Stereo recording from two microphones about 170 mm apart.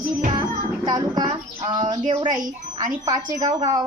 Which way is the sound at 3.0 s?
20° right (ahead or behind).